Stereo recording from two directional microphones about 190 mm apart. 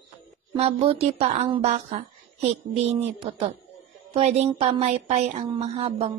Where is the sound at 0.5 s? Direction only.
30° right (ahead or behind).